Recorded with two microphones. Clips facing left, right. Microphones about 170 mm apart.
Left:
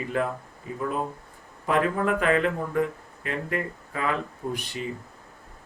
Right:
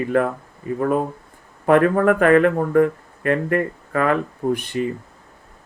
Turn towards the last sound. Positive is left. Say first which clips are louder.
# right 10 dB
turn(degrees=-55)  # may be behind; listen again after turning